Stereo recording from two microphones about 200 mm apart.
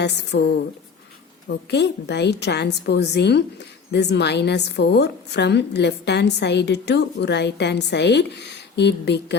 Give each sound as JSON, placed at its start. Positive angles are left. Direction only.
{"t": 0.0, "sound": "a woman's voice", "side_deg": 55}
{"t": 1.5, "sound": "a woman's voice", "side_deg": 60}